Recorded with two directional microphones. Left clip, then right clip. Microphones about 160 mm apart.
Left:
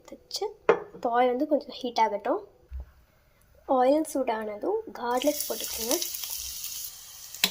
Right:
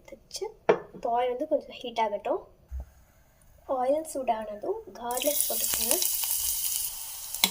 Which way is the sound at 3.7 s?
45° left (ahead or behind).